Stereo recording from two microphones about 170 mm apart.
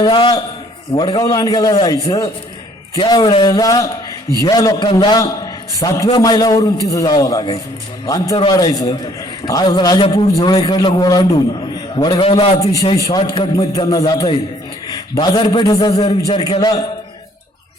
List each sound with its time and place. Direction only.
0.0 s a man's voice: 25° left (ahead or behind)
12.6 s a man's voice: 20° left (ahead or behind)
13.9 s a man's voice: 20° left (ahead or behind)